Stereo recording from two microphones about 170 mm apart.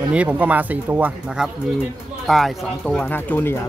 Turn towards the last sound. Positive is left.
turn(degrees=10)  # may be behind; listen again after turning